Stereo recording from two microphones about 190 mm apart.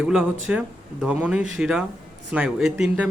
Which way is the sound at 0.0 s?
5° right (ahead or behind).